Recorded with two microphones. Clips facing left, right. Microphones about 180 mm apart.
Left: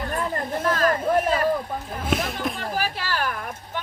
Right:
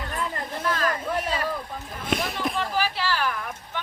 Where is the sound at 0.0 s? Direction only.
45° left (ahead or behind).